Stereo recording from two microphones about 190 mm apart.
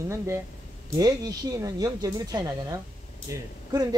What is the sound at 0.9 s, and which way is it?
Speech, 20° right (ahead or behind).